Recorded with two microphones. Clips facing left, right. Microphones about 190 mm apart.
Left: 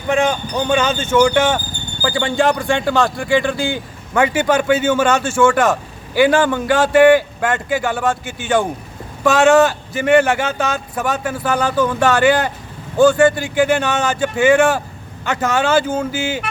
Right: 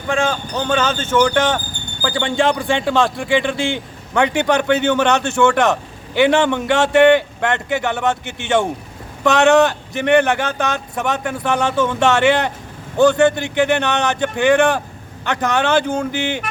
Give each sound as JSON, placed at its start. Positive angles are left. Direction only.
{"t": 0.1, "sound": "speech", "side_deg": 15}
{"t": 8.2, "sound": "speech", "side_deg": -65}
{"t": 9.2, "sound": "speech", "side_deg": 0}